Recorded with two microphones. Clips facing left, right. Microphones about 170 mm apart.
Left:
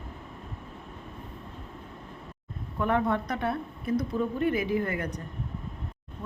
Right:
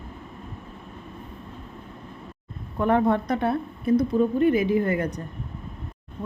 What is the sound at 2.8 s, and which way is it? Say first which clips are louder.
Speech: right 5 dB; 30° right (ahead or behind).